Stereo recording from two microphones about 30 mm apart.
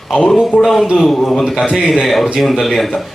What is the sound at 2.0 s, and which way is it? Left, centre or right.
Speech, centre.